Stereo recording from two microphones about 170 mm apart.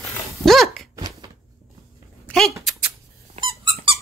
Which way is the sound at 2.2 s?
5° left (ahead or behind).